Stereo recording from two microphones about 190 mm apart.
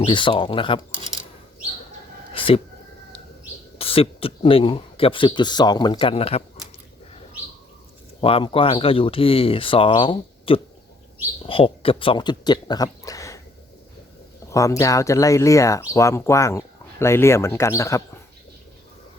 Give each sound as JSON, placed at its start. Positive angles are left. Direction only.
{"t": 0.0, "sound": "speech", "side_deg": 25}
{"t": 2.3, "sound": "a sound", "side_deg": 30}
{"t": 3.8, "sound": "speech", "side_deg": 30}
{"t": 8.2, "sound": "speech", "side_deg": 30}
{"t": 14.5, "sound": "speech", "side_deg": 15}